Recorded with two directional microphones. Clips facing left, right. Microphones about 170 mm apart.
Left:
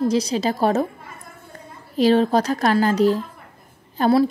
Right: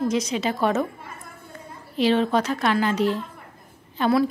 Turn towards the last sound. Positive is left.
turn(degrees=40)  # may be behind; listen again after turning